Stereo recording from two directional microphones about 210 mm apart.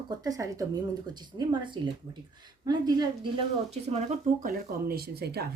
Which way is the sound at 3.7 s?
30° right (ahead or behind).